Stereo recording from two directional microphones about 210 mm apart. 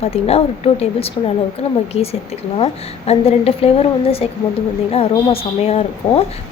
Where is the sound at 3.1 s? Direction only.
30° left (ahead or behind).